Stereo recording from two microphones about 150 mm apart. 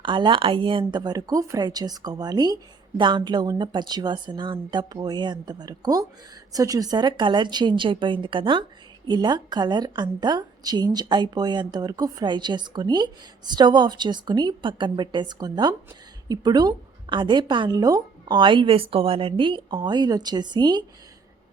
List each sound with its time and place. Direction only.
0.0 s a woman's voice: 30° right (ahead or behind)